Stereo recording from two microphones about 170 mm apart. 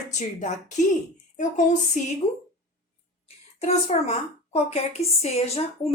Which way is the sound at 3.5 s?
40° left (ahead or behind).